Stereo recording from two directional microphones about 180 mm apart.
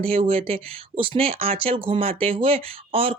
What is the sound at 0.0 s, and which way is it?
Speech, 30° right (ahead or behind).